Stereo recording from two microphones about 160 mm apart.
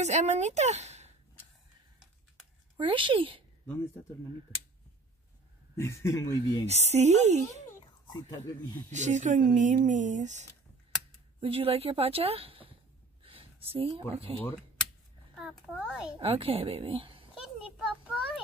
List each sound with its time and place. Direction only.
0.0 s speech: 45° right (ahead or behind)
2.8 s a woman's voice: 30° right (ahead or behind)
5.8 s speech: 15° left (ahead or behind)
6.6 s speech: 45° right (ahead or behind)
7.8 s a sound: 25° left (ahead or behind)
8.9 s speech: 45° right (ahead or behind)
11.4 s a woman's voice: 35° right (ahead or behind)
13.2 s a sound: 35° right (ahead or behind)
13.9 s a woman's voice: 35° right (ahead or behind)
15.3 s a child's voice: 5° right (ahead or behind)
16.2 s a woman's voice: 35° right (ahead or behind)
17.7 s a sound: centre (ahead or behind)